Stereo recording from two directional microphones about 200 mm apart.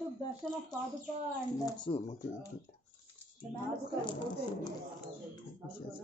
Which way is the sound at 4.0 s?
25° left (ahead or behind).